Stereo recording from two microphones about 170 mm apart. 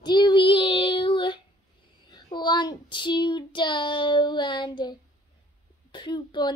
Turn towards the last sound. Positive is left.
turn(degrees=25)  # may be behind; listen again after turning